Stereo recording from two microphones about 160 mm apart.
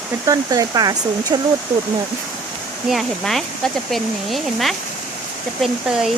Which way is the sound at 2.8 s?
Centre (ahead or behind).